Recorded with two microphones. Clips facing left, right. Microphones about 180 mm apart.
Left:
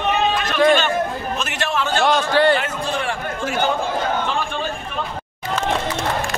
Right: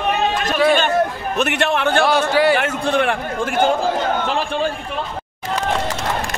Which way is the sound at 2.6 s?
60° right (ahead or behind).